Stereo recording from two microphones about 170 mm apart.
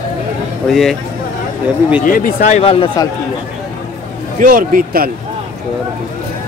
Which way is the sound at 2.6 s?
35° left (ahead or behind).